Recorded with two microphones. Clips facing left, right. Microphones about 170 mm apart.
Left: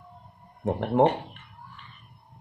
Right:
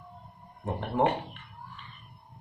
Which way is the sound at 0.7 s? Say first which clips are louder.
Left 7 dB; 70° left (ahead or behind).